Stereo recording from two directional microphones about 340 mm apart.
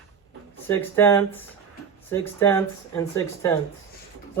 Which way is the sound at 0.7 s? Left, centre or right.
Centre.